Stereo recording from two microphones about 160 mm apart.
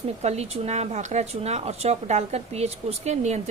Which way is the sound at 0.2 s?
40° right (ahead or behind).